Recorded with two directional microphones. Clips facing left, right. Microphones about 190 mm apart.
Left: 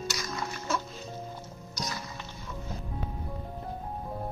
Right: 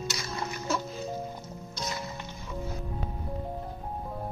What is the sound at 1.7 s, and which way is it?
Music, 25° right (ahead or behind).